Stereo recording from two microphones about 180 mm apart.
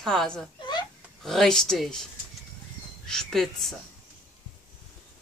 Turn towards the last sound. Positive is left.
turn(degrees=0)  # may be behind; listen again after turning